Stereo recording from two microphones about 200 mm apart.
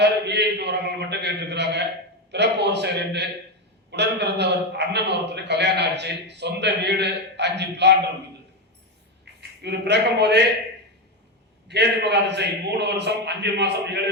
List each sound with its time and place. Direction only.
0.0 s a man's voice: 60° right (ahead or behind)
9.6 s a man's voice: 60° right (ahead or behind)
11.7 s a man's voice: 60° right (ahead or behind)